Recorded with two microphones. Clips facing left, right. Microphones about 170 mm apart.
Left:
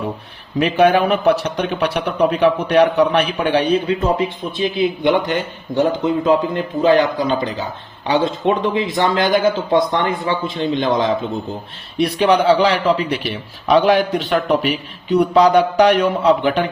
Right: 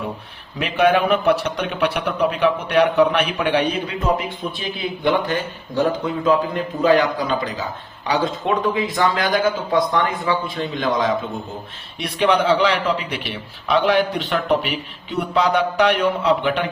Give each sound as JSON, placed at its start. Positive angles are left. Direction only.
{"t": 0.6, "sound": "a man's voice", "side_deg": 40}
{"t": 5.0, "sound": "speech", "side_deg": 20}
{"t": 11.9, "sound": "a man's voice", "side_deg": 35}